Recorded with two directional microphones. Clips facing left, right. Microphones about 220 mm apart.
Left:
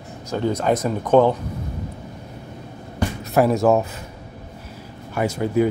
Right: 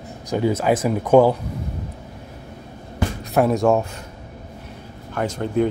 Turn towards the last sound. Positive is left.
turn(degrees=10)  # may be behind; listen again after turning